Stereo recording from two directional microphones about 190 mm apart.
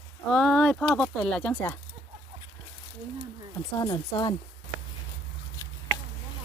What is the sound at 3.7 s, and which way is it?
Speech, 25° left (ahead or behind).